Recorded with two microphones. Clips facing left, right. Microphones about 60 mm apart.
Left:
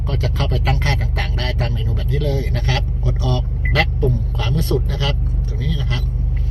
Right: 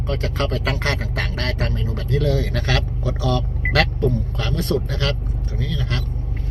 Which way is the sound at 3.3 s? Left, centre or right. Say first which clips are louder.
Right 1 dB; right.